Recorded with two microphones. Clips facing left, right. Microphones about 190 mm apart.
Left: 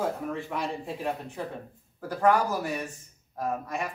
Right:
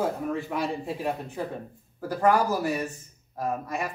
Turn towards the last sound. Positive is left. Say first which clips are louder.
# right 1 dB
turn(degrees=-5)  # may be behind; listen again after turning